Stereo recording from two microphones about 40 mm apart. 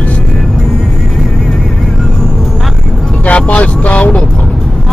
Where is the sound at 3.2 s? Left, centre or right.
Left.